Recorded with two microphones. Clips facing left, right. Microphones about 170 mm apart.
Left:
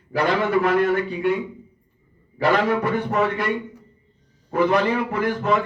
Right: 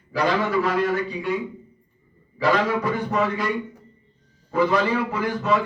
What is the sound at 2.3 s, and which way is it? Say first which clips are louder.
Speech: left 2 dB; 60° left (ahead or behind).